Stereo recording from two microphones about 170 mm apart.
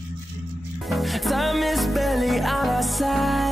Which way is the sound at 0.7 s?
Centre (ahead or behind).